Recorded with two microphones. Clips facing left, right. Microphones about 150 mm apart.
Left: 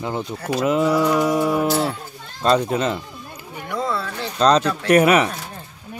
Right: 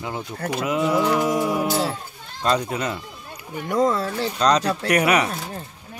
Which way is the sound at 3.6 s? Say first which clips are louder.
Right 4 dB; 40° right (ahead or behind).